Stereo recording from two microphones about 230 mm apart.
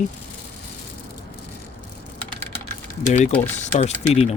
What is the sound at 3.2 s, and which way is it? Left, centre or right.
Speech, left.